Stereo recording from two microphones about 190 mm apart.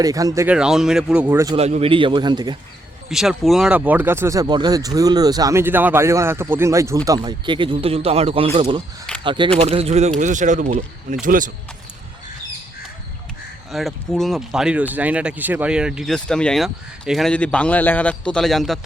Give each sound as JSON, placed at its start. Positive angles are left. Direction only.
{"t": 0.0, "sound": "speech", "side_deg": -20}
{"t": 0.4, "sound": "speech", "side_deg": -5}
{"t": 1.5, "sound": "speech", "side_deg": -35}
{"t": 3.1, "sound": "speech", "side_deg": 0}
{"t": 13.7, "sound": "speech", "side_deg": 0}